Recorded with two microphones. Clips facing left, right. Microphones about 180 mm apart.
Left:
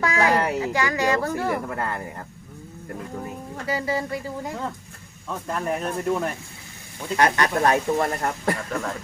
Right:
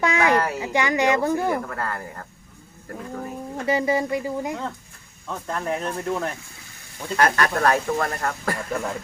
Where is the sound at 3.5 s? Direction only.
20° right (ahead or behind).